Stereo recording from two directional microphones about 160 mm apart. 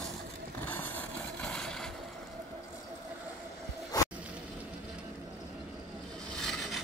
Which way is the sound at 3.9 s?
25° left (ahead or behind).